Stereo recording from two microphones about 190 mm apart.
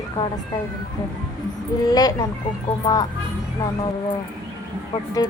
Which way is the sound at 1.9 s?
20° left (ahead or behind).